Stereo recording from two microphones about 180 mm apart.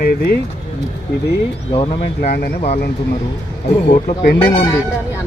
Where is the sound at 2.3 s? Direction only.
60° left (ahead or behind).